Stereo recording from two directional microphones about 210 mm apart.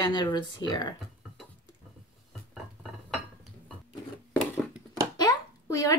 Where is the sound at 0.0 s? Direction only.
20° left (ahead or behind).